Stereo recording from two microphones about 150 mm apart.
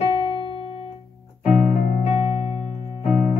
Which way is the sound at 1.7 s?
50° left (ahead or behind).